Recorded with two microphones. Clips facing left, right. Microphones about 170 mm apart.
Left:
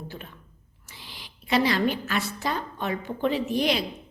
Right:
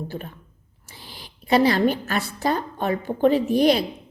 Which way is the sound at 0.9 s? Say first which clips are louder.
Right 3 dB; 40° right (ahead or behind).